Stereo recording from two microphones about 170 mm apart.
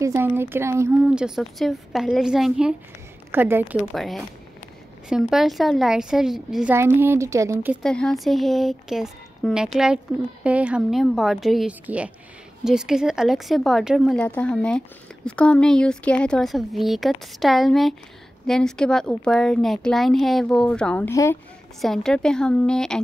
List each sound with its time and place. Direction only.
0.0 s a woman's voice: 15° right (ahead or behind)
1.0 s a woman's voice: 5° right (ahead or behind)
3.3 s a woman's voice: 10° right (ahead or behind)
3.9 s a woman's voice: centre (ahead or behind)
7.0 s a woman's voice: 15° right (ahead or behind)
7.8 s a woman's voice: 5° left (ahead or behind)
21.8 s a woman's voice: centre (ahead or behind)